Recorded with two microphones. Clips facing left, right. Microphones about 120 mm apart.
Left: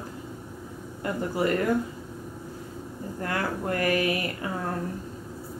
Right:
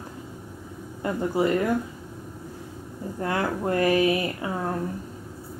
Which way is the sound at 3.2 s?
20° right (ahead or behind).